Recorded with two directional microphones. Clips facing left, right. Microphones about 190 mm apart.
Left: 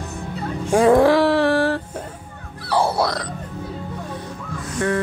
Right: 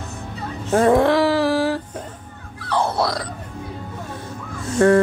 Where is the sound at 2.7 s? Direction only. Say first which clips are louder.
Left 1 dB; 10° left (ahead or behind).